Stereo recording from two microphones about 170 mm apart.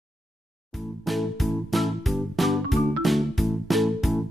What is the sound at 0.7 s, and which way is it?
Music, centre (ahead or behind).